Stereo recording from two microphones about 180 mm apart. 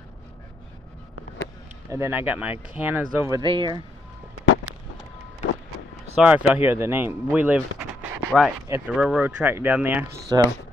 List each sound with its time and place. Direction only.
1.9 s speech: 15° right (ahead or behind)
6.1 s speech: 5° right (ahead or behind)
10.3 s speech: 20° right (ahead or behind)